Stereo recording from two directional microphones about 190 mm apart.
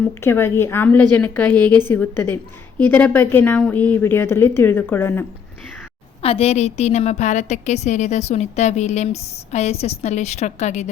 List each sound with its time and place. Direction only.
0.0 s a woman's voice: 10° left (ahead or behind)
6.2 s a woman's voice: 30° left (ahead or behind)